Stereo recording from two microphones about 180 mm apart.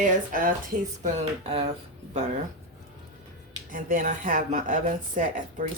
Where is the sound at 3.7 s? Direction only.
50° right (ahead or behind).